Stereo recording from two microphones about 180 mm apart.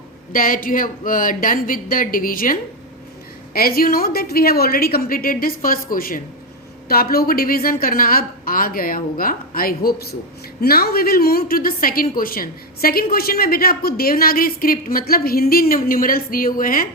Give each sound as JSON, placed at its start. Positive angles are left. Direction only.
{"t": 0.3, "sound": "a woman's voice", "side_deg": 50}